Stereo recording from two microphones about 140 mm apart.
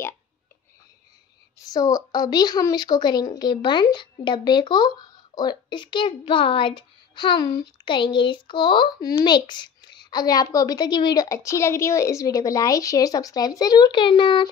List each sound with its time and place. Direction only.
1.7 s a woman's voice: 25° left (ahead or behind)